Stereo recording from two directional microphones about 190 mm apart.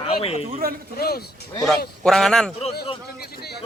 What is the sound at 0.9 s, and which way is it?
Speech, 55° left (ahead or behind).